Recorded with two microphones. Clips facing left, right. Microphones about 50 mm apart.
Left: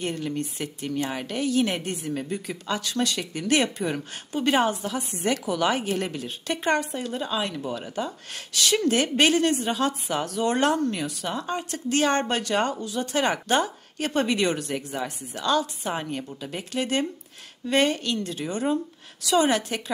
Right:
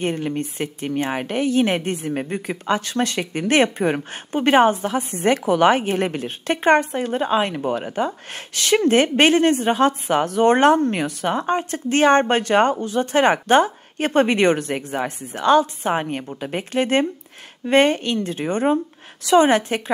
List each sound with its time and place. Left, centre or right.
0.0 s speech: right